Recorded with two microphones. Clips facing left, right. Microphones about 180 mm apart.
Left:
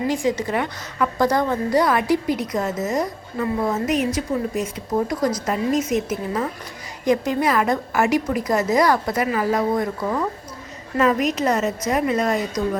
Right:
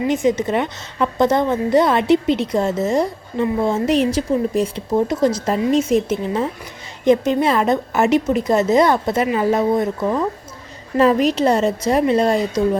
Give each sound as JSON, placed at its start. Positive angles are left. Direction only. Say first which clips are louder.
{"t": 0.1, "sound": "a woman's voice", "louder": "right 4 dB", "side_deg": -20}